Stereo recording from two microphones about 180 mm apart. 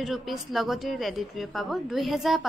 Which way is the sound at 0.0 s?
Centre (ahead or behind).